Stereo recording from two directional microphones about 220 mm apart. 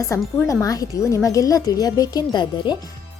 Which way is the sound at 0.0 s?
15° left (ahead or behind).